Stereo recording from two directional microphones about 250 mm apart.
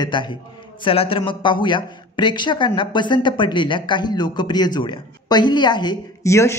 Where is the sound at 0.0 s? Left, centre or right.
Centre.